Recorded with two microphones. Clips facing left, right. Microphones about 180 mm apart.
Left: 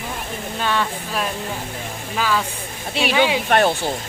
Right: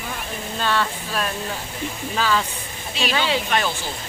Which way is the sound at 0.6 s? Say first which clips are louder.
Left 1 dB; 15° left (ahead or behind).